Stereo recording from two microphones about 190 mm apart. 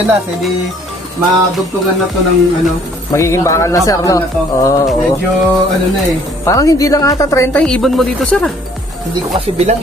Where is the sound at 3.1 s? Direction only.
15° left (ahead or behind).